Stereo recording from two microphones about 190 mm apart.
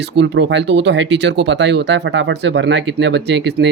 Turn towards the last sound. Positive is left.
turn(degrees=-65)  # may be behind; listen again after turning